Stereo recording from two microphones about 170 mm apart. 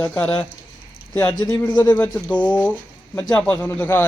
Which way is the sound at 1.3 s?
20° left (ahead or behind).